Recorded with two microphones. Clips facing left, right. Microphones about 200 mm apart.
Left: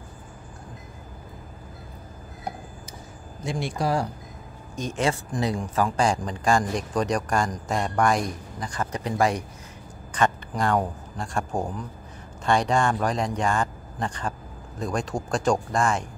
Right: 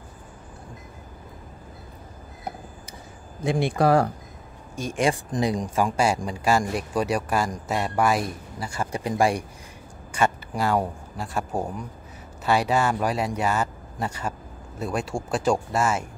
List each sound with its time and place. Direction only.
3.4 s speech: 55° right (ahead or behind)
4.7 s a man's voice: 10° right (ahead or behind)